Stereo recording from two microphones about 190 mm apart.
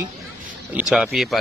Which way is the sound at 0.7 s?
5° right (ahead or behind).